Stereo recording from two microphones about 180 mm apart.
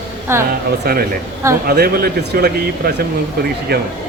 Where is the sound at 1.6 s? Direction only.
55° right (ahead or behind).